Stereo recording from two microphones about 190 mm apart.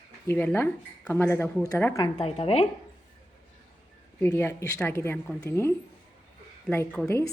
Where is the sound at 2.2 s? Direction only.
30° left (ahead or behind).